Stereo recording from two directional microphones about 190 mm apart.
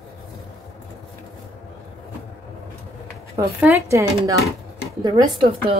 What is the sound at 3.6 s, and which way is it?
A woman's voice, 15° right (ahead or behind).